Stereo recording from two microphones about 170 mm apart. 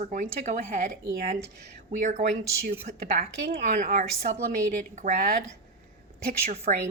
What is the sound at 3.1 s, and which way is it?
Speech, 65° right (ahead or behind).